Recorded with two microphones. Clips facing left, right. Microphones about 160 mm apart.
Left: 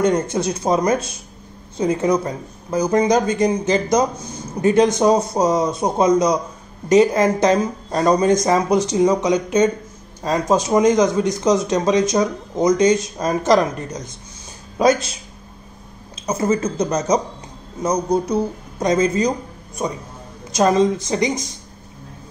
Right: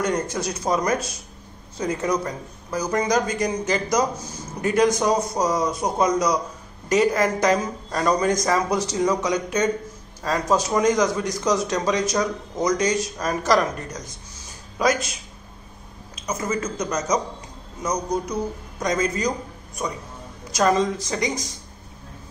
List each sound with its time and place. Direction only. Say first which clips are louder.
0.0 s speech: left 6 dB; 25° left (ahead or behind)
16.3 s speech: left 7 dB; 30° left (ahead or behind)